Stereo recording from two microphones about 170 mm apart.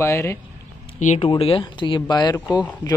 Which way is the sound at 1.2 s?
35° left (ahead or behind).